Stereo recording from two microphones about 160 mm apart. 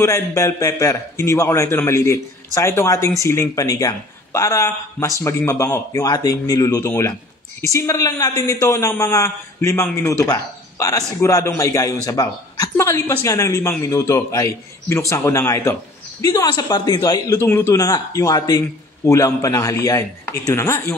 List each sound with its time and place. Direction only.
0.0 s a man's voice: 20° left (ahead or behind)